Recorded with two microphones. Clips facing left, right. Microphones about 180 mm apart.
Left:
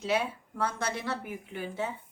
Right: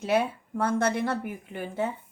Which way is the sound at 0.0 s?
55° right (ahead or behind).